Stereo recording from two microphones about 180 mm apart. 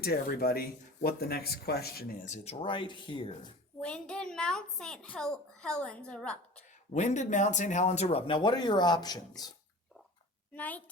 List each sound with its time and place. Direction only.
0.0 s speech: 60° left (ahead or behind); by 3.5 s 25° left (ahead or behind)
3.8 s a child's voice: 5° left (ahead or behind)
6.9 s speech: 40° left (ahead or behind); by 9.5 s 20° left (ahead or behind)
10.5 s a woman's voice: 10° left (ahead or behind)